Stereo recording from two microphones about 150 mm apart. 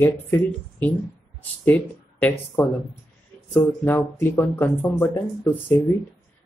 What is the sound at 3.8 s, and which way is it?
Speech, 15° left (ahead or behind).